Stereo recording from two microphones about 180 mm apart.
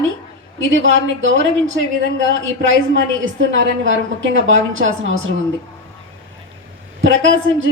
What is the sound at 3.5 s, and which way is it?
A woman's voice, 90° right.